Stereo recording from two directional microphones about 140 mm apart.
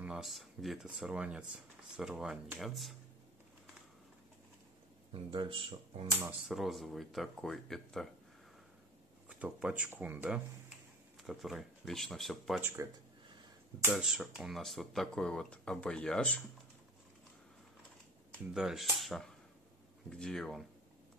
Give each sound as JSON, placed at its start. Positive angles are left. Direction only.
{"t": 0.0, "sound": "speech", "side_deg": -5}
{"t": 5.1, "sound": "speech", "side_deg": -35}
{"t": 6.4, "sound": "speech", "side_deg": 0}
{"t": 9.3, "sound": "speech", "side_deg": -5}
{"t": 12.6, "sound": "speech", "side_deg": -20}
{"t": 13.9, "sound": "speech", "side_deg": -5}
{"t": 18.5, "sound": "speech", "side_deg": 0}